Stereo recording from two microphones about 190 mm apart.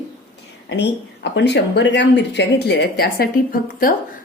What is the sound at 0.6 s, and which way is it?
A woman's voice, 65° left (ahead or behind).